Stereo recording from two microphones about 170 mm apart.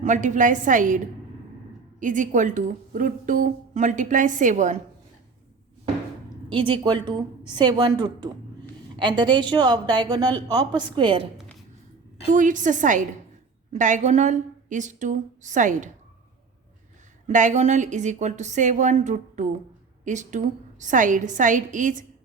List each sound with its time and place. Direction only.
0.0 s a woman's voice: 45° right (ahead or behind)
6.5 s speech: 30° right (ahead or behind)
12.3 s a woman's voice: 50° right (ahead or behind)
17.2 s a woman's voice: 45° right (ahead or behind)